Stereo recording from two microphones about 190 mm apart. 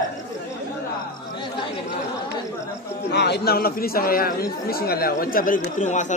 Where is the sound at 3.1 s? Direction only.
60° left (ahead or behind).